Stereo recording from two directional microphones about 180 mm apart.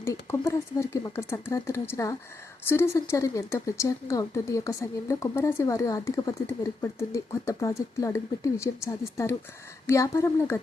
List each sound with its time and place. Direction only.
0.0 s speech: 15° left (ahead or behind)